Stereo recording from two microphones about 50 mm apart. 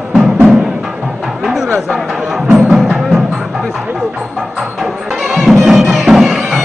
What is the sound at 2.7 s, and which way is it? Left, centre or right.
Music, centre.